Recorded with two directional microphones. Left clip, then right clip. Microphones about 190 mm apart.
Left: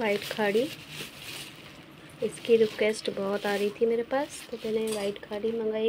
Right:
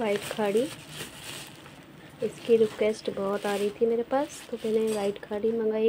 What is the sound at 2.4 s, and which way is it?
Speech, 5° right (ahead or behind).